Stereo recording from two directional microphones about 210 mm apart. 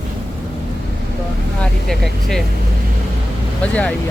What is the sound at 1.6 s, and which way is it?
Speech, centre (ahead or behind).